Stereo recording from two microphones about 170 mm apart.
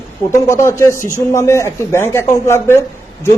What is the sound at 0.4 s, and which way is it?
Speech, 20° left (ahead or behind).